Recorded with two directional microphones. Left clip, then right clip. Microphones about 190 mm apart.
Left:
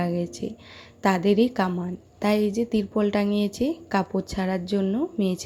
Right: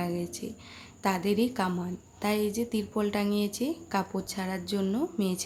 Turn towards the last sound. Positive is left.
turn(degrees=20)  # may be behind; listen again after turning